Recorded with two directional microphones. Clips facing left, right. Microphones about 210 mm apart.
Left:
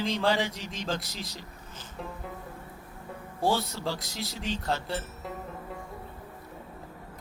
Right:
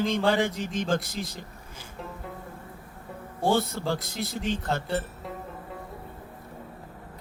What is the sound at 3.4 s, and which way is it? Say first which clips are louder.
Speech: right 3 dB; 50° right (ahead or behind).